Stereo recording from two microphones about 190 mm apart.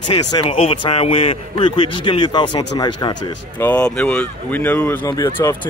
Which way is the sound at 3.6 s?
5° left (ahead or behind).